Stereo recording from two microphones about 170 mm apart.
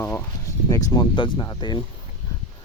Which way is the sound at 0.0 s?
15° left (ahead or behind).